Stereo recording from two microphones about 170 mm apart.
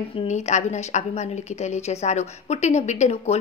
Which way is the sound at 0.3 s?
45° left (ahead or behind).